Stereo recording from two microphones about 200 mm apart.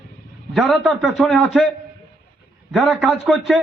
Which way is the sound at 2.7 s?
Centre (ahead or behind).